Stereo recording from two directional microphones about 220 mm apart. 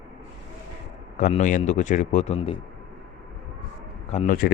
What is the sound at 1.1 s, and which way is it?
Speech, 35° left (ahead or behind).